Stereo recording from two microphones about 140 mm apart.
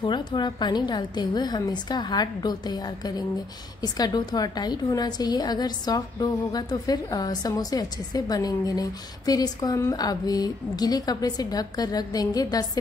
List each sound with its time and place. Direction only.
0.0 s a woman's voice: 35° left (ahead or behind)